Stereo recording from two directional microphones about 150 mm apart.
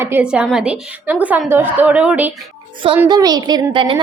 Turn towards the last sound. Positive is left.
turn(degrees=-35)  # may be behind; listen again after turning